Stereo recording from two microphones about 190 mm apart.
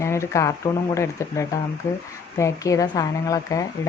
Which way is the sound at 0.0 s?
15° left (ahead or behind).